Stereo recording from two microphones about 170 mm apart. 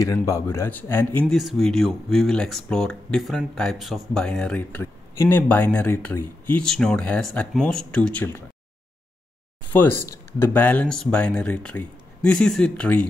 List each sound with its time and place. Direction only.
0.0 s speech: 20° left (ahead or behind)
1.2 s speech: centre (ahead or behind)
9.7 s speech: 10° left (ahead or behind)